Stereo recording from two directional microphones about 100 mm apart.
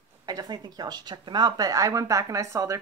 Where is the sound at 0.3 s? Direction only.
40° right (ahead or behind).